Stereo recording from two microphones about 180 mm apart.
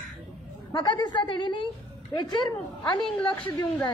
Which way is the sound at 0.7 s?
25° left (ahead or behind).